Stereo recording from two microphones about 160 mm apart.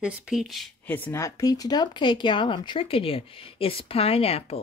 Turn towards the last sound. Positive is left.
turn(degrees=35)  # may be behind; listen again after turning